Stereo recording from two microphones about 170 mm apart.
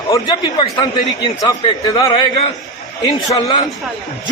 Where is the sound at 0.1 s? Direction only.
25° left (ahead or behind).